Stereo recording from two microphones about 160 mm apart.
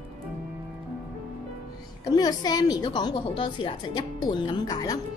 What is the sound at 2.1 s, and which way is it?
A woman's voice, 25° left (ahead or behind).